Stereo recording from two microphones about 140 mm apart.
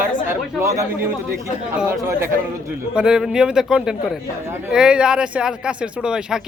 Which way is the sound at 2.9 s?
5° right (ahead or behind).